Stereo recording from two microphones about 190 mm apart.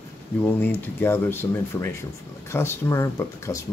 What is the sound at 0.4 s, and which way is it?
Speech, 10° left (ahead or behind).